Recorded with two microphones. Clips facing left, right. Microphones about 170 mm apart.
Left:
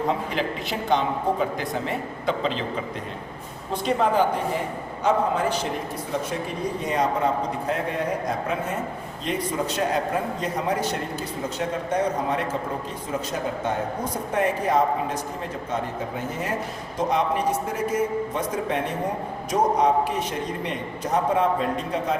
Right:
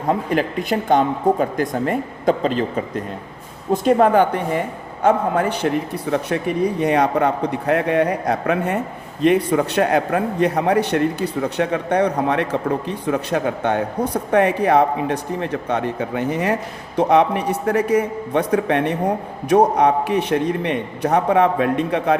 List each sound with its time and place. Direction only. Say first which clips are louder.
0.1 s a man's voice: right 6 dB; 50° right (ahead or behind)